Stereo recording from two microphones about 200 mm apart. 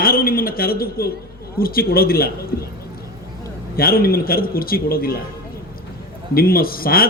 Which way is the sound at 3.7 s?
50° left (ahead or behind).